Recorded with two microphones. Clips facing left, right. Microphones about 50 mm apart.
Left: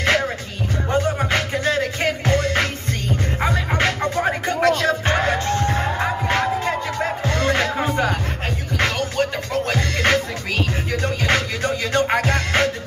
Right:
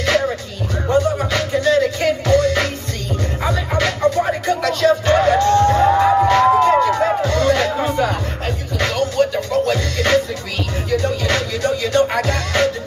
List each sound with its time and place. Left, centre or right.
0.8 s music: left
6.7 s music: right
7.2 s music: left